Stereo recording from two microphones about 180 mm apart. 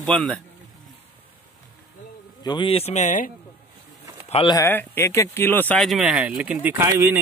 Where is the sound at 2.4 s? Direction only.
25° left (ahead or behind); by 3.3 s 45° left (ahead or behind).